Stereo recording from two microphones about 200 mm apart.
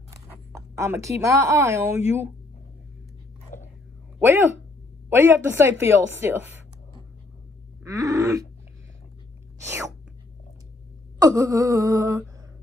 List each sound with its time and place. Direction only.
0.6 s speech: 15° right (ahead or behind)
3.5 s biting: 40° left (ahead or behind)
4.2 s speech: 10° right (ahead or behind)
7.8 s grunt: 15° right (ahead or behind)
9.7 s speech: 15° right (ahead or behind)
11.1 s speech: 15° right (ahead or behind)